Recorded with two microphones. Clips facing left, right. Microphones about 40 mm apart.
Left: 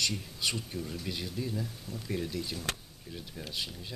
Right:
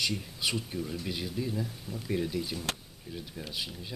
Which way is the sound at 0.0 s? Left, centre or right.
Centre.